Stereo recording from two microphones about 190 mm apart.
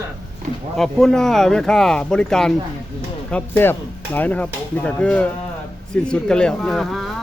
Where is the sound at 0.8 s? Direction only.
Centre (ahead or behind).